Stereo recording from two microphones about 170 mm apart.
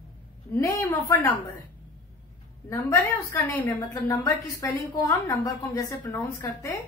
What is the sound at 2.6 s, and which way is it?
A woman's voice, 15° left (ahead or behind).